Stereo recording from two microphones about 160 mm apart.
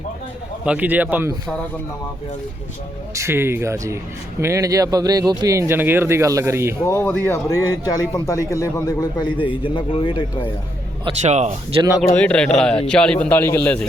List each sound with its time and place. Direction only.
0.6 s speech: 10° right (ahead or behind)
3.2 s speech: 15° right (ahead or behind)
6.8 s speech: 15° left (ahead or behind); by 10.5 s 30° left (ahead or behind)
11.2 s speech: 45° right (ahead or behind)
12.0 s a man's voice: 10° left (ahead or behind)